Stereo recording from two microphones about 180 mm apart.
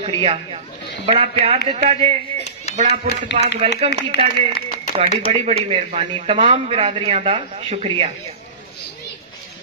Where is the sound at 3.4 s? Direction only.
35° right (ahead or behind).